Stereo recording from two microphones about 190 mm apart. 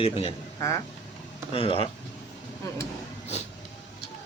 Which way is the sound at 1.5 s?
30° left (ahead or behind).